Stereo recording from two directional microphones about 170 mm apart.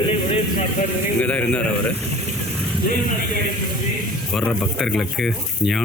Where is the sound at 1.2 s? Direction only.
5° left (ahead or behind).